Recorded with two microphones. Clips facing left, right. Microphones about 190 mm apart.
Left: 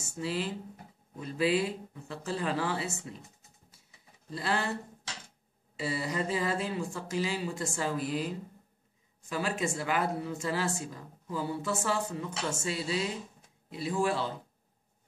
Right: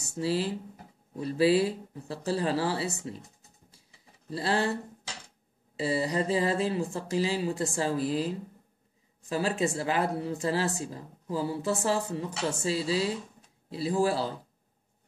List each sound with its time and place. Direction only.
0.2 s a woman's voice: 35° right (ahead or behind)
4.3 s a woman's voice: 30° right (ahead or behind)
5.8 s a woman's voice: 35° right (ahead or behind)
9.3 s a woman's voice: 35° right (ahead or behind)